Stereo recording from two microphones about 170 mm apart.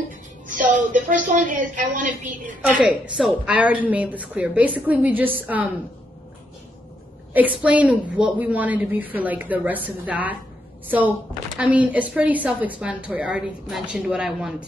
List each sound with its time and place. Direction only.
0.5 s a woman's voice: 50° right (ahead or behind)
2.8 s a woman's voice: 5° right (ahead or behind)
7.3 s a woman's voice: 10° right (ahead or behind)
11.5 s a woman's voice: 10° right (ahead or behind)